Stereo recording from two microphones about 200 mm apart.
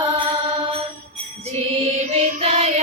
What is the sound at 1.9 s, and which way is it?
Music, 35° right (ahead or behind).